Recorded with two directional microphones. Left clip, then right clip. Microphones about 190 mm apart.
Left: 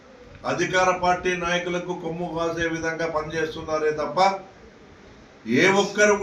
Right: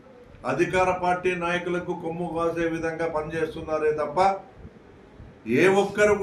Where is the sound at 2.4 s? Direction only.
30° right (ahead or behind).